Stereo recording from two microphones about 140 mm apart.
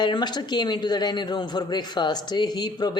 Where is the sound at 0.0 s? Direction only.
30° left (ahead or behind).